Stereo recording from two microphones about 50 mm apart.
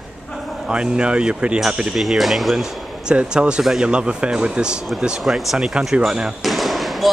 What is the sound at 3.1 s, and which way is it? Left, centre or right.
A woman's voice, centre.